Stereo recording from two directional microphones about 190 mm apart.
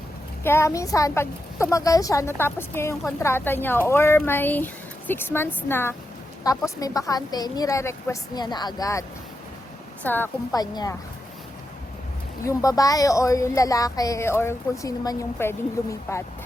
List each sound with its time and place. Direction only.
0.4 s a woman's voice: 15° left (ahead or behind)
10.5 s a woman's voice: 20° left (ahead or behind)
12.5 s speech: 20° left (ahead or behind)